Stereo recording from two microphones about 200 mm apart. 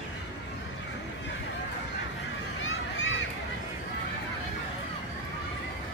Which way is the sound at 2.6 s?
70° left (ahead or behind).